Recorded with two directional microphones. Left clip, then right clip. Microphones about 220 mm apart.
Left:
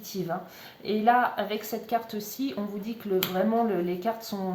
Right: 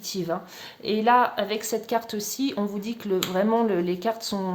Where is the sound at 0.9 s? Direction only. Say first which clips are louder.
Right 3 dB; 45° right (ahead or behind).